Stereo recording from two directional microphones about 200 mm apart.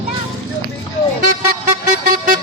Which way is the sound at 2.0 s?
45° right (ahead or behind).